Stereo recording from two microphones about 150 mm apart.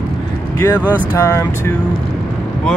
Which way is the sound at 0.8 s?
10° right (ahead or behind).